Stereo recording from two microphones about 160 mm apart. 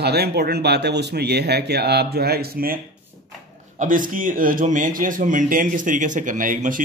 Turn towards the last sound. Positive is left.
turn(degrees=-55)  # may be behind; listen again after turning